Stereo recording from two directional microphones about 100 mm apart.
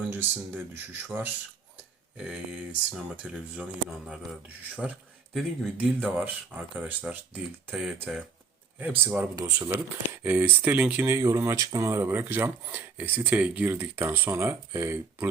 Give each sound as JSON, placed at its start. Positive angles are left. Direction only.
{"t": 0.1, "sound": "speech", "side_deg": -20}
{"t": 2.1, "sound": "speech", "side_deg": -5}
{"t": 5.3, "sound": "speech", "side_deg": 0}
{"t": 6.1, "sound": "speech", "side_deg": -20}
{"t": 7.7, "sound": "speech", "side_deg": -5}
{"t": 9.0, "sound": "speech", "side_deg": -15}
{"t": 9.4, "sound": "speech", "side_deg": -25}